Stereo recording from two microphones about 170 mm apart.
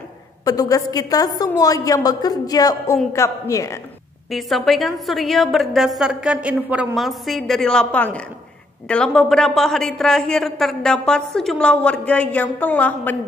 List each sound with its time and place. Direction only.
0.5 s a woman's voice: 20° left (ahead or behind)
4.3 s a man's voice: centre (ahead or behind)